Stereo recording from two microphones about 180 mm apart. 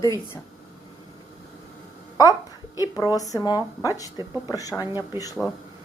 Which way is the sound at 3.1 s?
20° left (ahead or behind).